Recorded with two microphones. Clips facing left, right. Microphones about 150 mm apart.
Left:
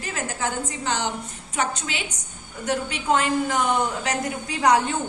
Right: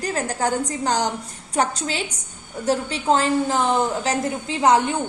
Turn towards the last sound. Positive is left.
turn(degrees=-20)  # may be behind; listen again after turning